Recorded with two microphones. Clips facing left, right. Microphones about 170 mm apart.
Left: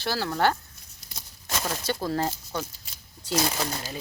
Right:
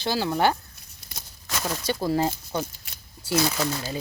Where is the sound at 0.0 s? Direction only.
15° right (ahead or behind).